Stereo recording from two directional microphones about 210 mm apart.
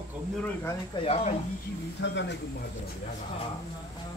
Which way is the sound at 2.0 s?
60° left (ahead or behind).